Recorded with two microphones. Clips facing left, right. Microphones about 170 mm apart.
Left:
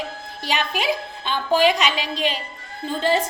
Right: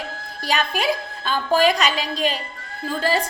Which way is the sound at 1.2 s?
20° left (ahead or behind).